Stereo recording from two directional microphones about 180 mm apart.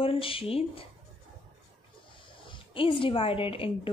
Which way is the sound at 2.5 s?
30° left (ahead or behind).